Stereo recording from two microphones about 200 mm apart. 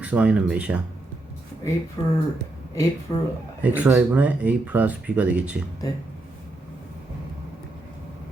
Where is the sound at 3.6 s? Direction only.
5° right (ahead or behind).